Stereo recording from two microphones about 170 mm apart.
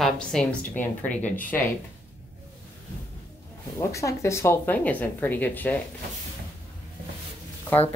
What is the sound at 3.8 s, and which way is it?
Speech, 15° left (ahead or behind).